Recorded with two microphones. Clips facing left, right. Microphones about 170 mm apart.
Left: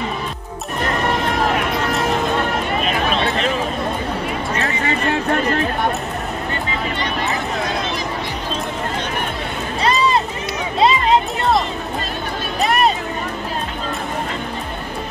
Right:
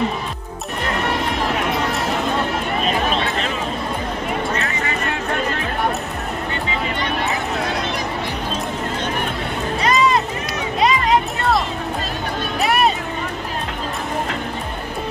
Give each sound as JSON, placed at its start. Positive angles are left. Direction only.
{"t": 9.8, "sound": "run", "side_deg": 30}
{"t": 10.8, "sound": "a sound", "side_deg": 25}
{"t": 12.6, "sound": "music", "side_deg": -5}